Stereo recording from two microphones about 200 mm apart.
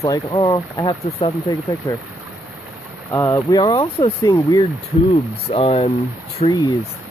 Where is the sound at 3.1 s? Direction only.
15° left (ahead or behind).